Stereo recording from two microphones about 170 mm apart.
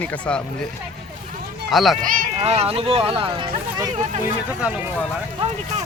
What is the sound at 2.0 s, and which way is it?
Speech, 55° right (ahead or behind).